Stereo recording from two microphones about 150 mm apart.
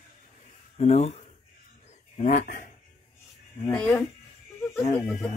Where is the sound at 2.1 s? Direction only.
60° left (ahead or behind).